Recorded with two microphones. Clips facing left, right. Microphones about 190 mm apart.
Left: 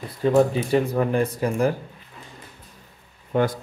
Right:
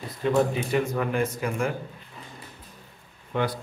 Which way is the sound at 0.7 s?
35° left (ahead or behind).